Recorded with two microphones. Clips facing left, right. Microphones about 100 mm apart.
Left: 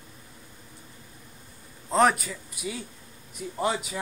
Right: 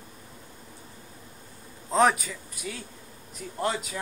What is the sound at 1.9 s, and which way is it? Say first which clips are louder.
A man's voice: even; centre (ahead or behind).